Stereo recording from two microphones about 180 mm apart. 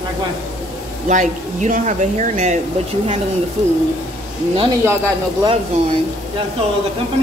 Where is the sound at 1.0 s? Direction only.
45° right (ahead or behind).